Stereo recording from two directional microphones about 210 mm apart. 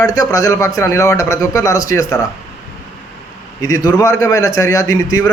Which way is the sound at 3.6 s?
15° left (ahead or behind).